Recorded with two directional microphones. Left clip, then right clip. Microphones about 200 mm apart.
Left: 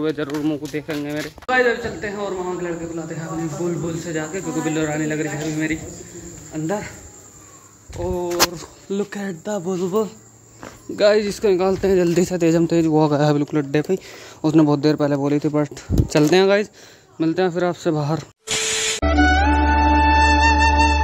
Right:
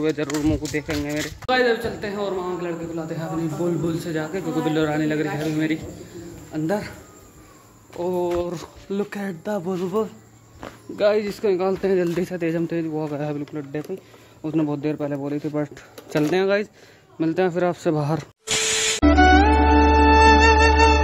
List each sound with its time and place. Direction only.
0.0 s speech: 10° left (ahead or behind)
1.4 s a man's voice: 5° right (ahead or behind)
8.0 s speech: 10° right (ahead or behind)
8.9 s a man's voice: 5° left (ahead or behind)
11.0 s speech: 25° left (ahead or behind); by 13.9 s 50° left (ahead or behind)
14.4 s speech: 30° left (ahead or behind); by 16.7 s 15° left (ahead or behind)
17.2 s a sound: centre (ahead or behind)